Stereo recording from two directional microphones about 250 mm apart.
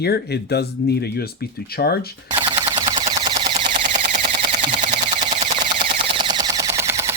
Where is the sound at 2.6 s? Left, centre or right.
Centre; by 5.3 s right.